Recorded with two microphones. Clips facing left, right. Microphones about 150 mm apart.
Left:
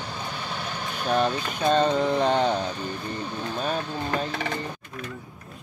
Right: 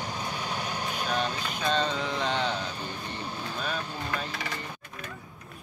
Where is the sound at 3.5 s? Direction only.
40° left (ahead or behind).